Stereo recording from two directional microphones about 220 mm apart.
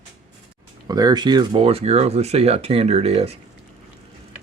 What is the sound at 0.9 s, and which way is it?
Speech, 20° right (ahead or behind).